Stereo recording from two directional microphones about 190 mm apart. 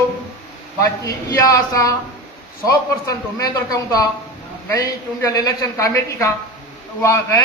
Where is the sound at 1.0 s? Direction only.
15° left (ahead or behind).